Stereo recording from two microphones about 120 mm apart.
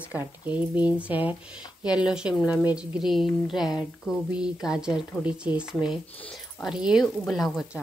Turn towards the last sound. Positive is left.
turn(degrees=0)  # may be behind; listen again after turning